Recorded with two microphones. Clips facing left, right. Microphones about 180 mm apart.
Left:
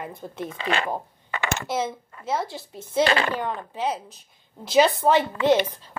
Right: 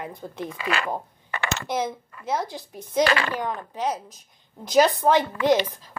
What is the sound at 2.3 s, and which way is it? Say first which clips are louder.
Speech: even; 15° right (ahead or behind).